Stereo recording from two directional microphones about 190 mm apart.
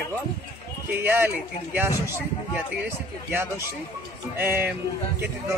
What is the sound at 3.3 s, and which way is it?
Speech, 10° right (ahead or behind).